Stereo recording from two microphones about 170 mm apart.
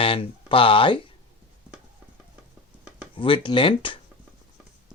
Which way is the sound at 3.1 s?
30° left (ahead or behind).